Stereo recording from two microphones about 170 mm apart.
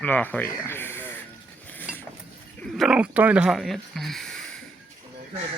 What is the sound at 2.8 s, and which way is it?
Speech, 5° right (ahead or behind).